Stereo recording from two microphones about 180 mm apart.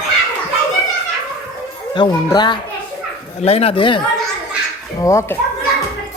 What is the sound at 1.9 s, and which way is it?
Speech, 25° left (ahead or behind).